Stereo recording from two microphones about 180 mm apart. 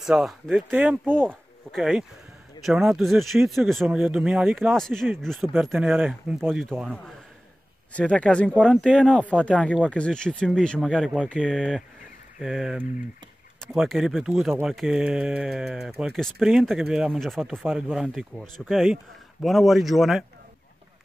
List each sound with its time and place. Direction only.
0.0 s speech: centre (ahead or behind)